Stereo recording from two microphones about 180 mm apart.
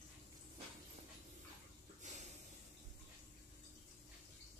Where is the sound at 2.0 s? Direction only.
40° right (ahead or behind).